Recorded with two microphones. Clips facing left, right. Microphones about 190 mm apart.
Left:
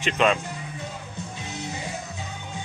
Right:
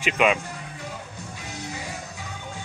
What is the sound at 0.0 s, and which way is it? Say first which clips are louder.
Speech: even; 10° right (ahead or behind).